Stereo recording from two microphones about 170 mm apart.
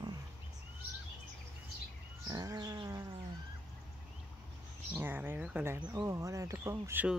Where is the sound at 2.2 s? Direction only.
25° right (ahead or behind).